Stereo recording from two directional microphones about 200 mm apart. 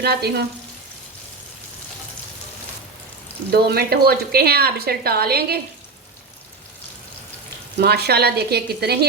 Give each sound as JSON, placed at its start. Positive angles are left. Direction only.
{"t": 0.0, "sound": "a woman's voice", "side_deg": -50}
{"t": 3.5, "sound": "a woman's voice", "side_deg": -50}
{"t": 7.8, "sound": "a woman's voice", "side_deg": -55}